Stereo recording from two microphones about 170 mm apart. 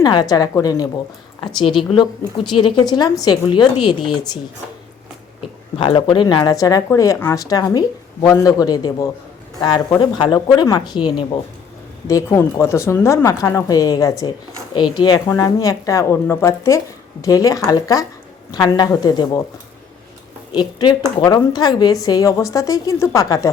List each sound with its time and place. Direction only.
0.0 s speech: 25° left (ahead or behind)
5.7 s speech: 35° left (ahead or behind)
20.5 s a woman's voice: 25° left (ahead or behind)